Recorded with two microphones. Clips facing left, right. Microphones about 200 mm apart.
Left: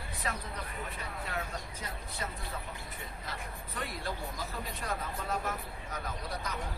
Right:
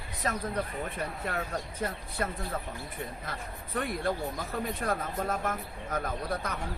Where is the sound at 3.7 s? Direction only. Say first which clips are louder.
Right 8 dB; 55° right (ahead or behind).